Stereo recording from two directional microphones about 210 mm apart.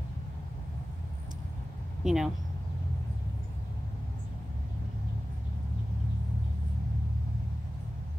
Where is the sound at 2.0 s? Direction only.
Centre (ahead or behind).